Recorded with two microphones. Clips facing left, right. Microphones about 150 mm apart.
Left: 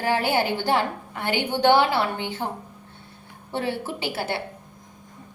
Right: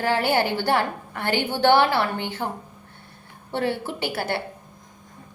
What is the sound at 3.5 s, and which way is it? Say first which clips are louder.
Speech: right 2 dB; 60° right (ahead or behind).